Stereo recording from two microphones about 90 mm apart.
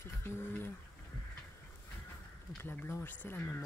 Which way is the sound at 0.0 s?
25° left (ahead or behind).